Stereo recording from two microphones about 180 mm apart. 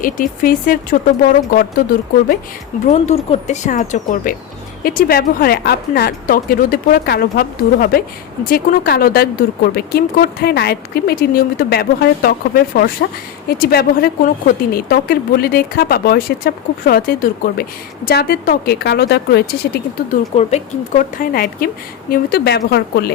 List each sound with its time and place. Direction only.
0.0 s speech: 50° left (ahead or behind)
2.9 s speech: 40° left (ahead or behind); by 19.8 s 65° left (ahead or behind)
20.3 s speech: 35° left (ahead or behind)
21.2 s speech: 55° left (ahead or behind)